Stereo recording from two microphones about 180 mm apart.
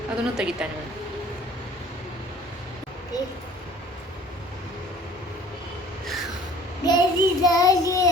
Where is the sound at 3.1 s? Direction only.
20° left (ahead or behind).